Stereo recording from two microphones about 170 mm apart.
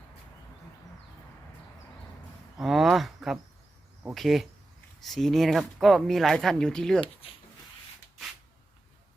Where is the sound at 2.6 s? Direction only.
Centre (ahead or behind).